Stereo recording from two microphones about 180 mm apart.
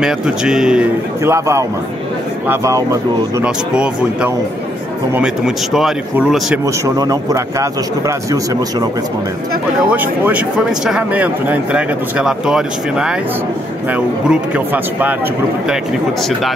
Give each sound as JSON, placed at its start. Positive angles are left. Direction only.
{"t": 0.0, "sound": "speech", "side_deg": -5}
{"t": 1.2, "sound": "speech", "side_deg": -15}
{"t": 3.4, "sound": "speech", "side_deg": -5}
{"t": 6.6, "sound": "speech", "side_deg": -20}
{"t": 9.8, "sound": "speech", "side_deg": -10}